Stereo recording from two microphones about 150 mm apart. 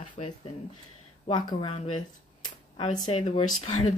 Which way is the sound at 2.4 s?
30° left (ahead or behind).